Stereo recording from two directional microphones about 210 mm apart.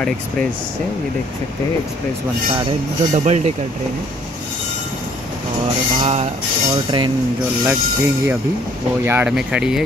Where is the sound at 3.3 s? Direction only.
30° right (ahead or behind).